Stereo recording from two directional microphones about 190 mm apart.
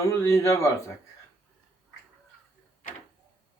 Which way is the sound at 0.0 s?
15° left (ahead or behind).